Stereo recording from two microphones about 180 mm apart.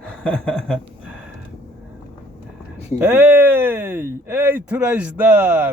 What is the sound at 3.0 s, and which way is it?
Speech, 10° right (ahead or behind).